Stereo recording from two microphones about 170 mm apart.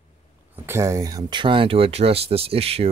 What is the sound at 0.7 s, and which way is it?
Speech, 15° right (ahead or behind).